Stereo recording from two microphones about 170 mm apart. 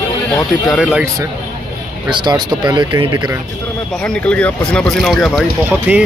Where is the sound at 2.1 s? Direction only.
25° right (ahead or behind).